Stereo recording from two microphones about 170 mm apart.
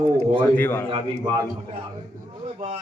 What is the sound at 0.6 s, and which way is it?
Speech, 10° left (ahead or behind).